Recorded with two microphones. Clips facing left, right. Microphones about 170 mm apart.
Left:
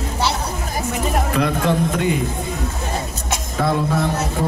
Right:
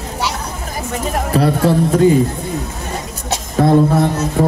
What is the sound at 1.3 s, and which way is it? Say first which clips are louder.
Speech: right 7 dB; 35° right (ahead or behind).